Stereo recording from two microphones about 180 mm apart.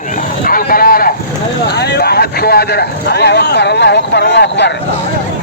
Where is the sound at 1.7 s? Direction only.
65° left (ahead or behind).